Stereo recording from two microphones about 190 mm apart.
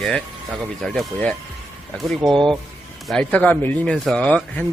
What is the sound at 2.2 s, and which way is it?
Speech, 25° right (ahead or behind).